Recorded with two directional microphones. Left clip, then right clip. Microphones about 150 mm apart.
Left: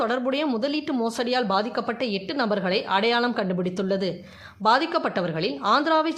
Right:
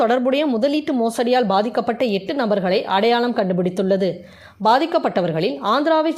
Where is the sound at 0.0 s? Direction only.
35° right (ahead or behind).